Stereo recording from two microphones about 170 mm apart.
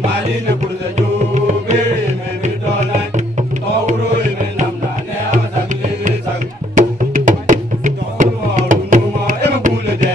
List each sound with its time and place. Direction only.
0.9 s music: 45° right (ahead or behind)
6.7 s music: 50° right (ahead or behind)